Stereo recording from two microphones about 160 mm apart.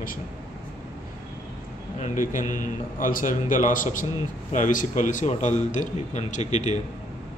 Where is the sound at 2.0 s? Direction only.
55° left (ahead or behind).